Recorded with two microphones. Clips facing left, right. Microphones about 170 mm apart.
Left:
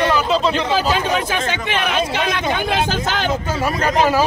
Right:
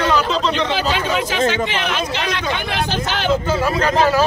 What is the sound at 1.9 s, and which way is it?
A man's voice, 55° left (ahead or behind).